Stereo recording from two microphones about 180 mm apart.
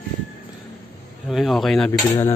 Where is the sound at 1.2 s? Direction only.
Centre (ahead or behind).